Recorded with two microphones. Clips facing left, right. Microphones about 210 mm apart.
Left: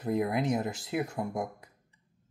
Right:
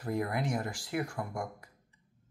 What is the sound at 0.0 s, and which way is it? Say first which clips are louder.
Speech: left 4 dB; 20° left (ahead or behind).